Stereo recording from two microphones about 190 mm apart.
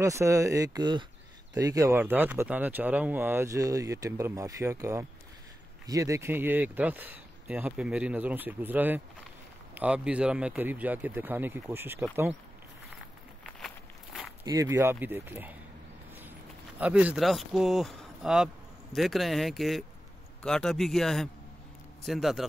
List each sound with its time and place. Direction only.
0.0 s speech: 15° right (ahead or behind)
14.4 s speech: 20° right (ahead or behind)
16.8 s speech: 5° right (ahead or behind)